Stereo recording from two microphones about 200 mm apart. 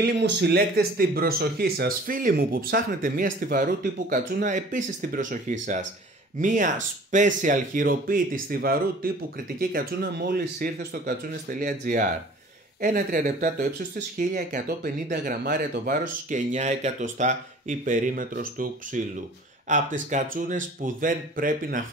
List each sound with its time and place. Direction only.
0.0 s speech: 55° right (ahead or behind)